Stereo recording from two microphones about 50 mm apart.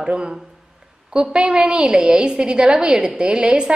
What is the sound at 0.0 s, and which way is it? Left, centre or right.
A woman's voice, centre.